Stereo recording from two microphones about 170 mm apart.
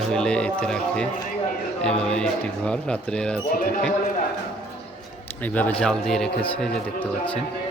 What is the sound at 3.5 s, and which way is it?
Speech, 55° left (ahead or behind).